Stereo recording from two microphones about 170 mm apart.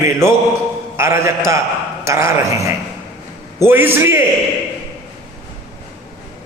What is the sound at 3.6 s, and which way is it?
Speech, 15° right (ahead or behind).